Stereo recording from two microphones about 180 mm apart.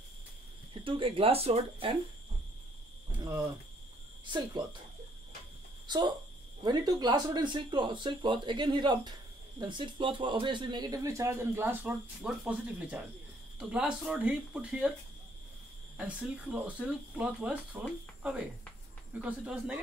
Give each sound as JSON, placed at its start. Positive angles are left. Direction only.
{"t": 0.8, "sound": "speech", "side_deg": -30}
{"t": 3.2, "sound": "speech", "side_deg": -20}
{"t": 5.9, "sound": "speech", "side_deg": -25}
{"t": 16.0, "sound": "speech", "side_deg": -5}